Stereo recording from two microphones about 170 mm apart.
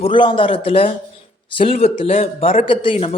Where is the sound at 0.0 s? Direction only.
30° left (ahead or behind).